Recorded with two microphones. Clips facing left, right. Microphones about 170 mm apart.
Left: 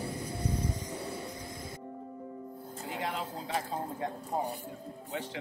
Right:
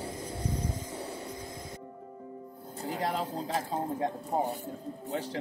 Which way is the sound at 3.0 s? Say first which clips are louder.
Right 4 dB; 40° right (ahead or behind).